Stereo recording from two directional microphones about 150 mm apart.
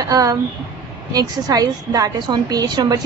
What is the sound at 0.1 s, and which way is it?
A woman's voice, 25° right (ahead or behind).